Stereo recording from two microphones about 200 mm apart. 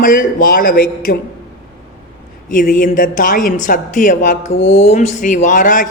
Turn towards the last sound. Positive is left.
turn(degrees=40)  # may be behind; listen again after turning